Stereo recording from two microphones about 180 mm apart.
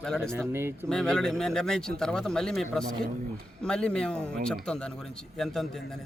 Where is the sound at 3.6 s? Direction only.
5° left (ahead or behind).